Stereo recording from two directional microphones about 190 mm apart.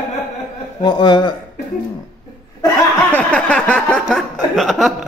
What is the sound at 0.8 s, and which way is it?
Speech, 25° left (ahead or behind).